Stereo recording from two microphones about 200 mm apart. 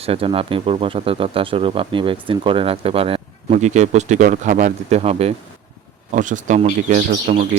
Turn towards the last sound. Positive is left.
turn(degrees=-35)  # may be behind; listen again after turning